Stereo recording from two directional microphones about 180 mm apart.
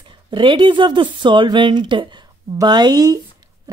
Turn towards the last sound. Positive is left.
turn(degrees=-20)  # may be behind; listen again after turning